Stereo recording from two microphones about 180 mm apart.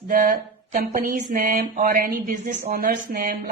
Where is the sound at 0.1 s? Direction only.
50° right (ahead or behind).